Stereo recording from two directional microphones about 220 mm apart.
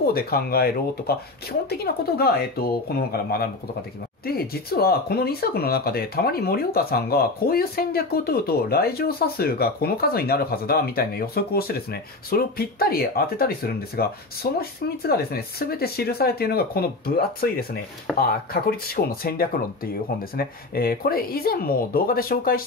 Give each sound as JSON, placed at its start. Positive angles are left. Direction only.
{"t": 0.0, "sound": "speech", "side_deg": 45}